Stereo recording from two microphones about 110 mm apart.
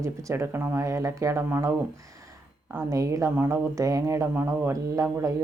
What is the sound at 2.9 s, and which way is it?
Speech, 30° right (ahead or behind).